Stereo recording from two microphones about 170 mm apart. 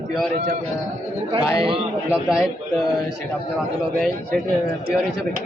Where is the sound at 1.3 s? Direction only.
30° right (ahead or behind).